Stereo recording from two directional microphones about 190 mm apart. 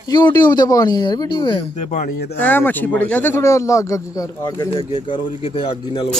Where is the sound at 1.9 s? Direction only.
45° left (ahead or behind).